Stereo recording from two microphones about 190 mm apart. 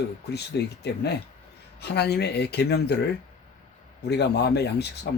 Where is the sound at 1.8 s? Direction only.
60° left (ahead or behind).